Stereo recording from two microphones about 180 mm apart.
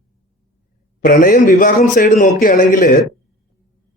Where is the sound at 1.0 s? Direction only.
50° left (ahead or behind).